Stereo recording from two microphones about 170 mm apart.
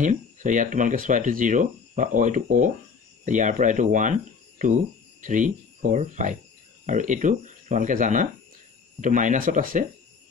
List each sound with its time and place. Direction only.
0.0 s speech: 50° right (ahead or behind)
5.2 s speech: 50° right (ahead or behind)